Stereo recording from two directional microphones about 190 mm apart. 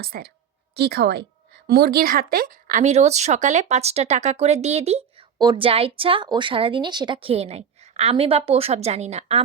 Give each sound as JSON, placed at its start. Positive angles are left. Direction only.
{"t": 0.0, "sound": "a woman's voice", "side_deg": -55}